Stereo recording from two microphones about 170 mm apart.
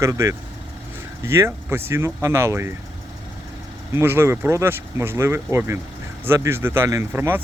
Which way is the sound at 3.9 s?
15° right (ahead or behind).